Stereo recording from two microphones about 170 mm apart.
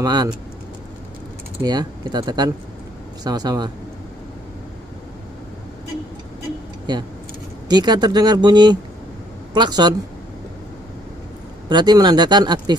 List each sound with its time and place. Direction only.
0.0 s speech: 25° right (ahead or behind)
1.6 s speech: 25° right (ahead or behind)
6.9 s speech: 25° right (ahead or behind)
11.7 s speech: 25° right (ahead or behind)